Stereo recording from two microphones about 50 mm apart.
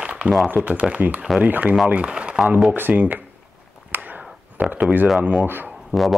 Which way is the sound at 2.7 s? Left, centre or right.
Right.